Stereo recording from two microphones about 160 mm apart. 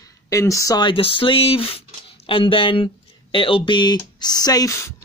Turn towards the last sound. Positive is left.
turn(degrees=15)  # may be behind; listen again after turning